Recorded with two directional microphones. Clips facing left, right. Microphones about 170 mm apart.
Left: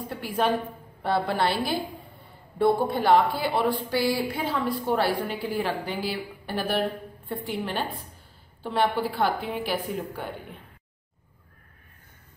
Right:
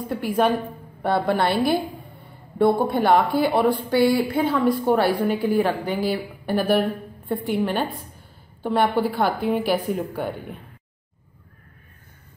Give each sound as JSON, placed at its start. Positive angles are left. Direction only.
{"t": 1.0, "sound": "a woman's voice", "side_deg": -55}